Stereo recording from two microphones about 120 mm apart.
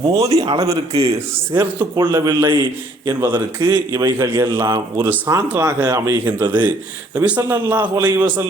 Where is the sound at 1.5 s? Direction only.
30° right (ahead or behind).